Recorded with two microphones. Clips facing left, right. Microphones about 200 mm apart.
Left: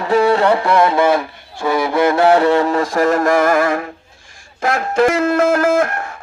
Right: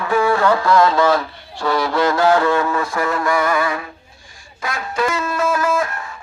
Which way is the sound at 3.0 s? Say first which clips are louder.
Left 6 dB; 45° left (ahead or behind).